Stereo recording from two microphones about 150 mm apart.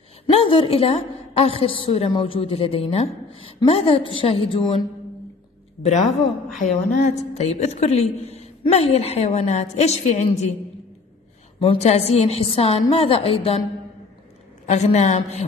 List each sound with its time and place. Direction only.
0.3 s a woman's voice: 35° left (ahead or behind)
5.8 s a woman's voice: 45° left (ahead or behind)
11.6 s a woman's voice: 40° left (ahead or behind)
14.7 s a woman's voice: 50° left (ahead or behind)